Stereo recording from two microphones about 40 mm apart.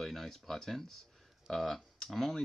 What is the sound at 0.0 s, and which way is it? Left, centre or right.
Speech, centre.